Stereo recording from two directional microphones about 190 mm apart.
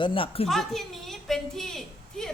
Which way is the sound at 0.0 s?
25° left (ahead or behind).